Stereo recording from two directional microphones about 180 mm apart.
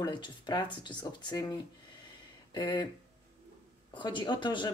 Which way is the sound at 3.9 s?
25° left (ahead or behind).